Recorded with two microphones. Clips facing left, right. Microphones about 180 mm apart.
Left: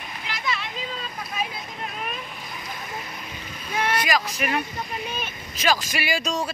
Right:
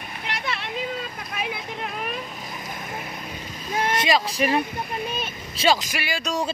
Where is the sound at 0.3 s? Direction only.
60° right (ahead or behind).